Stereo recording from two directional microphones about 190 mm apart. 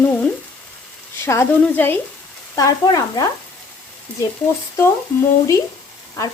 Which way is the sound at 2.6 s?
20° left (ahead or behind).